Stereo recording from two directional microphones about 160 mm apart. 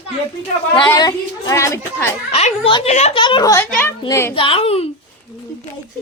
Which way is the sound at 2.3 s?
40° left (ahead or behind).